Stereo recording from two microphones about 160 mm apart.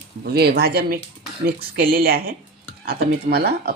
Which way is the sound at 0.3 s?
85° right.